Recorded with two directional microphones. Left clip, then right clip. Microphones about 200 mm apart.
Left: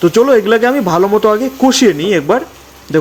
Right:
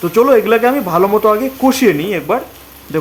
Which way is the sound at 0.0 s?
15° left (ahead or behind).